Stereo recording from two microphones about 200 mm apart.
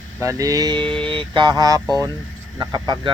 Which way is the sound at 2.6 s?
20° right (ahead or behind).